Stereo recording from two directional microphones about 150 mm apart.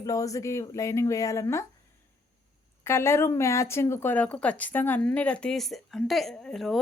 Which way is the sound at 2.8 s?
15° left (ahead or behind).